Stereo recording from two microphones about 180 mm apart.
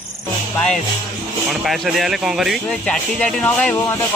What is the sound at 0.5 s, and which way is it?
Speech, 5° left (ahead or behind).